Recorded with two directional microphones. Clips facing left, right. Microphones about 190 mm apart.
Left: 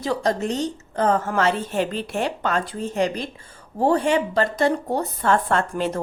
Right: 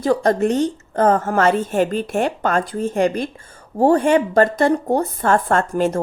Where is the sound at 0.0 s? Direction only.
50° right (ahead or behind).